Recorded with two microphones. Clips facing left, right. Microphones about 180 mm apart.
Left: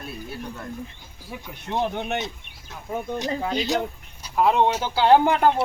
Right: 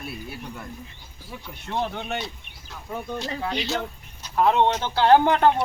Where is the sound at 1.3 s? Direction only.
15° left (ahead or behind).